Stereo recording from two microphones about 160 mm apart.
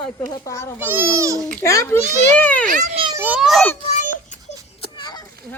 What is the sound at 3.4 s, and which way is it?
Speech, centre (ahead or behind).